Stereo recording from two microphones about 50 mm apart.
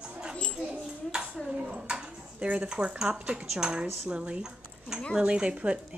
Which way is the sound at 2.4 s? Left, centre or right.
Right.